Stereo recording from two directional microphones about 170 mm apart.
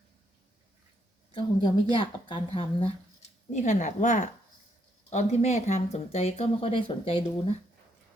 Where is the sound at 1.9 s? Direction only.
30° left (ahead or behind).